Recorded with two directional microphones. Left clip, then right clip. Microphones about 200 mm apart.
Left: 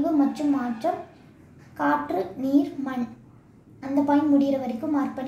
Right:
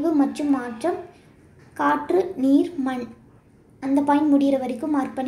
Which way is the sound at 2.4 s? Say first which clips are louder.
Right 4 dB; 35° right (ahead or behind).